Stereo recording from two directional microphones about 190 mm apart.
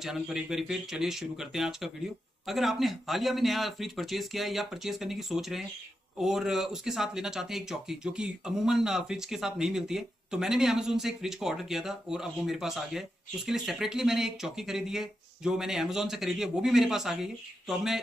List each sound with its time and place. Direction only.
0.0 s speech: centre (ahead or behind)